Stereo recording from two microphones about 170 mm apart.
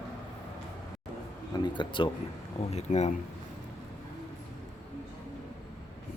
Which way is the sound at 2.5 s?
40° left (ahead or behind).